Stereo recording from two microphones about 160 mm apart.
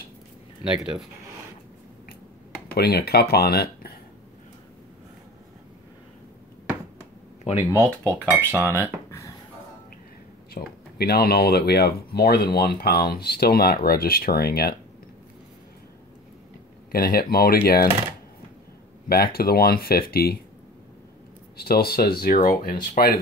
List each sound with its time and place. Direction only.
0.7 s speech: centre (ahead or behind)
2.7 s speech: 80° left
7.7 s speech: 20° right (ahead or behind)
8.5 s cutlery: 15° left (ahead or behind)
10.5 s speech: 80° left
16.9 s speech: 70° left (ahead or behind)
19.0 s speech: 70° left (ahead or behind)
21.5 s speech: 75° left (ahead or behind)